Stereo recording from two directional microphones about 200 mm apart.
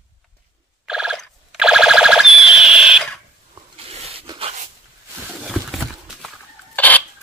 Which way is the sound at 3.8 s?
30° right (ahead or behind).